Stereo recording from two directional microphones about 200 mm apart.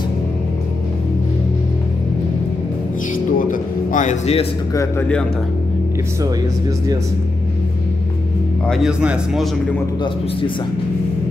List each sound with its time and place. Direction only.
3.3 s music: 40° left (ahead or behind)
4.7 s speech: 10° left (ahead or behind)
8.6 s speech: centre (ahead or behind)